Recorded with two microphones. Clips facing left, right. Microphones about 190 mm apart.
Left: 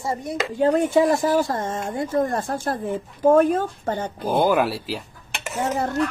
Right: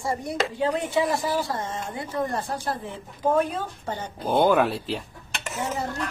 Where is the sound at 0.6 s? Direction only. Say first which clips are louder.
Left 8 dB; 45° left (ahead or behind).